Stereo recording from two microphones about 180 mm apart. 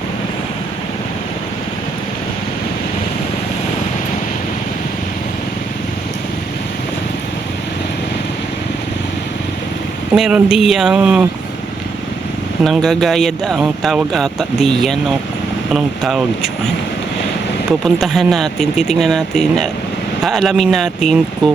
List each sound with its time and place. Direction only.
10.2 s speech: 5° right (ahead or behind)
12.6 s speech: centre (ahead or behind)
17.7 s speech: centre (ahead or behind)